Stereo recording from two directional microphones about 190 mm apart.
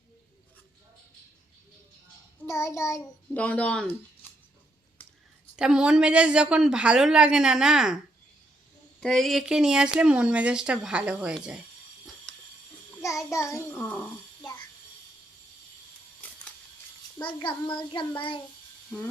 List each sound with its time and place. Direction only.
2.5 s a child's voice: 15° left (ahead or behind)
5.5 s speech: 5° right (ahead or behind)
9.0 s speech: centre (ahead or behind)
13.3 s a child's voice: 15° left (ahead or behind)
16.2 s a sound: 10° left (ahead or behind)
17.2 s a child's voice: 25° left (ahead or behind)